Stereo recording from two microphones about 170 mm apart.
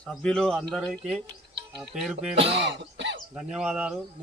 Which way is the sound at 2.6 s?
90° right.